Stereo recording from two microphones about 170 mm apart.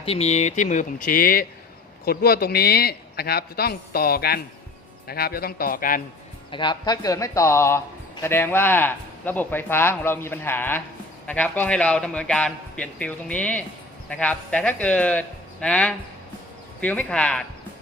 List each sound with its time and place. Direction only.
0.0 s speech: 35° left (ahead or behind); by 6.0 s 55° left (ahead or behind)
6.5 s a man's voice: 25° left (ahead or behind); by 17.4 s 5° left (ahead or behind)